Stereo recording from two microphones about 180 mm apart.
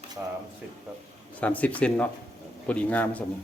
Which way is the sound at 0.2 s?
10° right (ahead or behind).